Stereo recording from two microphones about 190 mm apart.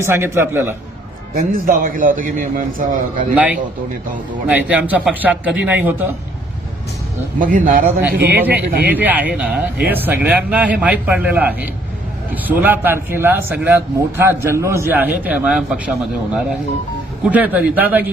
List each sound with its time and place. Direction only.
0.0 s speech: 10° right (ahead or behind)
1.3 s a man's voice: 50° right (ahead or behind)
3.3 s speech: 10° right (ahead or behind)
7.3 s a man's voice: 45° right (ahead or behind)
8.4 s speech: 10° right (ahead or behind)